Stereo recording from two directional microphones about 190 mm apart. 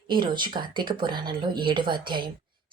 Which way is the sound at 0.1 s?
25° right (ahead or behind).